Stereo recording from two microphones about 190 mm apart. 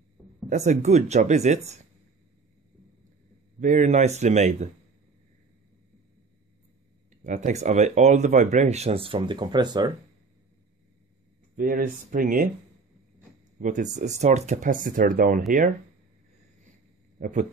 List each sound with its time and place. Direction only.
0.5 s speech: 40° right (ahead or behind)
3.5 s speech: 40° right (ahead or behind)
7.2 s speech: 40° right (ahead or behind); by 9.9 s 20° right (ahead or behind)
11.5 s speech: 45° right (ahead or behind)
13.6 s speech: 40° right (ahead or behind)
17.2 s speech: 40° right (ahead or behind)